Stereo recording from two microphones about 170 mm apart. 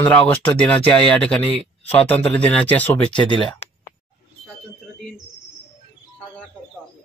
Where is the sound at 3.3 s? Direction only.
30° left (ahead or behind).